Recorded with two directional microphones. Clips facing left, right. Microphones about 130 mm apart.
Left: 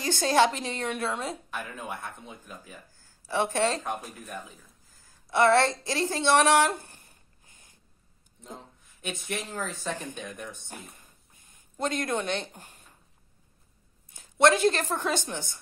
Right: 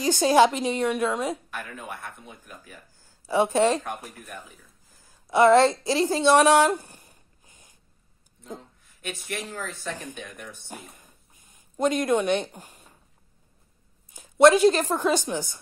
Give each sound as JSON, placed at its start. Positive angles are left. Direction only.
{"t": 0.0, "sound": "a woman's voice", "side_deg": -15}
{"t": 1.5, "sound": "a man's voice", "side_deg": 20}
{"t": 3.3, "sound": "a woman's voice", "side_deg": -15}
{"t": 3.8, "sound": "speech", "side_deg": 15}
{"t": 4.9, "sound": "a woman's voice", "side_deg": -15}
{"t": 7.1, "sound": "a sound", "side_deg": -15}
{"t": 9.0, "sound": "speech", "side_deg": 15}
{"t": 11.7, "sound": "a woman's voice", "side_deg": -15}
{"t": 12.5, "sound": "speech", "side_deg": -40}
{"t": 14.1, "sound": "a woman's voice", "side_deg": -15}